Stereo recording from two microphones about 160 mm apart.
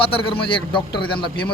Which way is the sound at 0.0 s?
35° left (ahead or behind).